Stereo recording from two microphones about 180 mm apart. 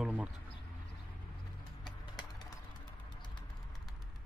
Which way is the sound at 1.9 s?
20° left (ahead or behind).